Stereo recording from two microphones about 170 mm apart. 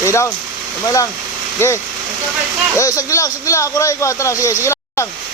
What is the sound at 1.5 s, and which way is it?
Speech, 15° left (ahead or behind).